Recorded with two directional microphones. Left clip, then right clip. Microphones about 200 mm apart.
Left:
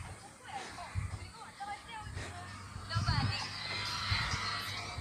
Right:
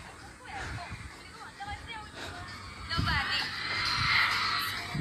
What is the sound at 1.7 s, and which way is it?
Vehicle, 35° right (ahead or behind).